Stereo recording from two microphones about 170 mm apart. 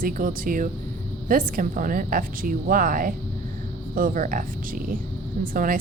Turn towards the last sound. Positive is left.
turn(degrees=-55)  # may be behind; listen again after turning